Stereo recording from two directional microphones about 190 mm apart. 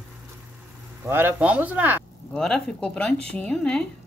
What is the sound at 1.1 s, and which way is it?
Speech, 10° right (ahead or behind).